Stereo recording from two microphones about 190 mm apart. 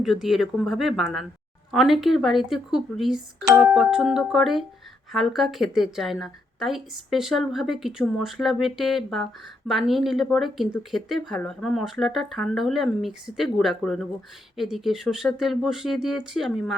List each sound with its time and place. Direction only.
0.0 s a woman's voice: centre (ahead or behind)